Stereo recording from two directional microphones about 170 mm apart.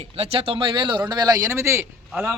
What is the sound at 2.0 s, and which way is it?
Speech, 5° right (ahead or behind).